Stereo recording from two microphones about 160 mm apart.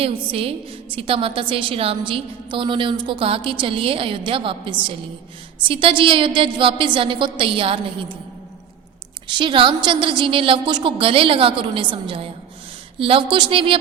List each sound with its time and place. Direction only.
0.0 s a woman's voice: 35° right (ahead or behind)
9.2 s a woman's voice: 30° right (ahead or behind)